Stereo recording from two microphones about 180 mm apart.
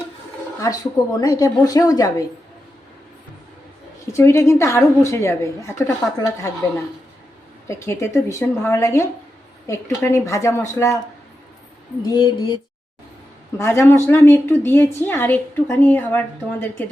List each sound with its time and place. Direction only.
0.6 s a woman's voice: 20° left (ahead or behind)
4.0 s a woman's voice: 15° left (ahead or behind)
7.7 s a woman's voice: 15° left (ahead or behind)
12.0 s a woman's voice: 25° left (ahead or behind)
13.6 s a woman's voice: 15° left (ahead or behind)